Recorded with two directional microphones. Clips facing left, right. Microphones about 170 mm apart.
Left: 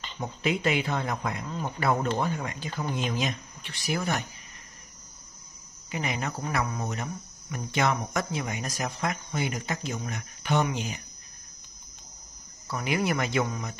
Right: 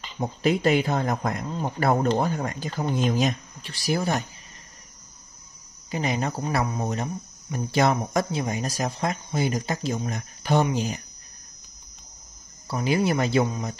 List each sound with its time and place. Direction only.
0.2 s speech: 35° right (ahead or behind)
5.9 s speech: 35° right (ahead or behind)
12.6 s speech: 30° right (ahead or behind)